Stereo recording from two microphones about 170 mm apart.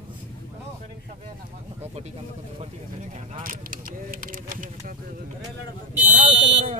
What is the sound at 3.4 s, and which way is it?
Speech, 55° right (ahead or behind).